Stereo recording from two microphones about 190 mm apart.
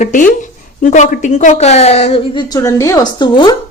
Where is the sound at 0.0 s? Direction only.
45° left (ahead or behind).